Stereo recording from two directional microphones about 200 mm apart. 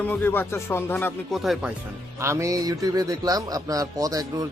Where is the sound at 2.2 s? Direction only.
15° right (ahead or behind).